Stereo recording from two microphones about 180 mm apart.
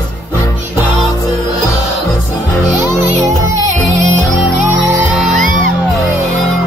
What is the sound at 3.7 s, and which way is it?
Music, 40° right (ahead or behind).